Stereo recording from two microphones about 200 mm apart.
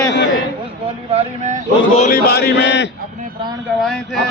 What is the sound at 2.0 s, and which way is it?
Speech, 45° left (ahead or behind).